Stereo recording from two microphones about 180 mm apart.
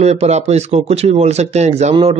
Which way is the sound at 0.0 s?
40° right (ahead or behind).